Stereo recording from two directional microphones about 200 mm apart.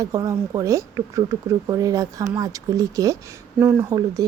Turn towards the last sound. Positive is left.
turn(degrees=-20)  # may be behind; listen again after turning